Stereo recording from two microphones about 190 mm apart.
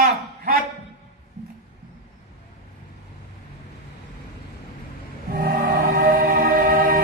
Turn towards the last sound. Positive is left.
turn(degrees=-50)  # may be behind; listen again after turning